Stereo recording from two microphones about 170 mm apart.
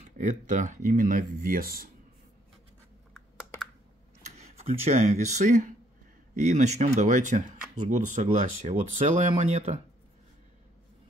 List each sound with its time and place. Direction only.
0.0 s speech: 45° right (ahead or behind)
4.2 s speech: 40° right (ahead or behind)